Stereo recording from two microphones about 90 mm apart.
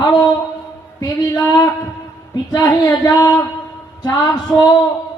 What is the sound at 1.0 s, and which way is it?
Speech, 45° left (ahead or behind).